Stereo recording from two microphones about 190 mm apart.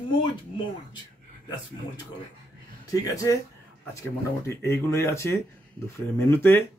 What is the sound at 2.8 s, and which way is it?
Speech, 15° left (ahead or behind).